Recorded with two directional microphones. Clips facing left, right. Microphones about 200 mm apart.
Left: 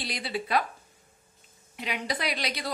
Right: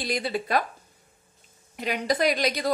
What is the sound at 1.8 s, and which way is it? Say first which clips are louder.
Speech: right 7 dB; 45° right (ahead or behind).